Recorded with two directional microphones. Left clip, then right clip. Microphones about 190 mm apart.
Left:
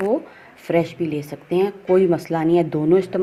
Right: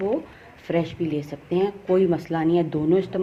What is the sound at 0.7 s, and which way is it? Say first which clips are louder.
Speech: left 4 dB; 35° left (ahead or behind).